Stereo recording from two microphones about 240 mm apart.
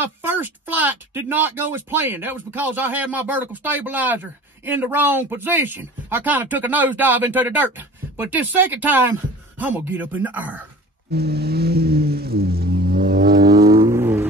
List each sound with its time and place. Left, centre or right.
0.0 s speech: centre
11.1 s vehicle: right
13.5 s vehicle: centre